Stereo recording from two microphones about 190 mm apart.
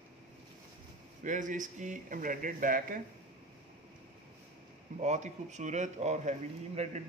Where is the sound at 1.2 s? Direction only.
40° right (ahead or behind).